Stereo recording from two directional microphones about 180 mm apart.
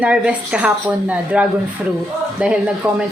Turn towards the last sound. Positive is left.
turn(degrees=-5)  # may be behind; listen again after turning